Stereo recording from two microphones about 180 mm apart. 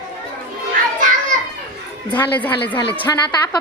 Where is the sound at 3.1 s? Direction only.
20° left (ahead or behind).